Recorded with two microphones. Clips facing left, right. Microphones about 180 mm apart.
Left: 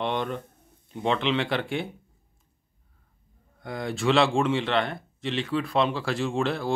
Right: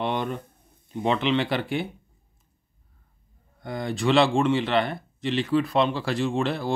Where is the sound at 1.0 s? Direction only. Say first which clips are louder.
Right 2 dB; 5° right (ahead or behind).